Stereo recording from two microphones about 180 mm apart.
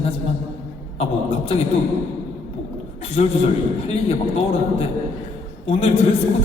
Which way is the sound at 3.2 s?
35° left (ahead or behind).